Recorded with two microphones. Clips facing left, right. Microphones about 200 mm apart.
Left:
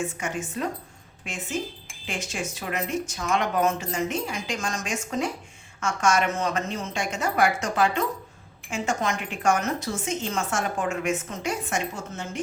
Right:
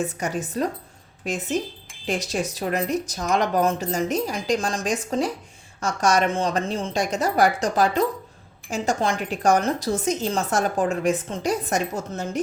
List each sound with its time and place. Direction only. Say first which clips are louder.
0.0 s a woman's voice: right 3 dB; 35° right (ahead or behind)